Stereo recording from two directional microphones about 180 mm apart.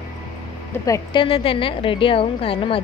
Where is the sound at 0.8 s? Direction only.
20° left (ahead or behind).